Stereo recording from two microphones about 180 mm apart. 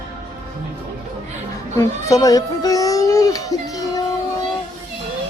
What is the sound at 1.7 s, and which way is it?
Speech, 20° left (ahead or behind).